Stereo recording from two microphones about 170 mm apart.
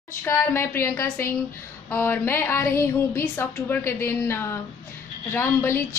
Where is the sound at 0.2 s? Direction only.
15° left (ahead or behind).